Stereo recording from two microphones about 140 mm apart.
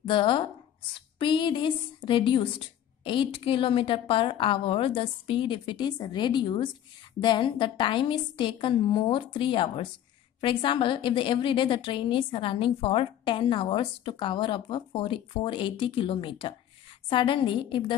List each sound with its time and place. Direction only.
0.0 s a woman's voice: 35° left (ahead or behind)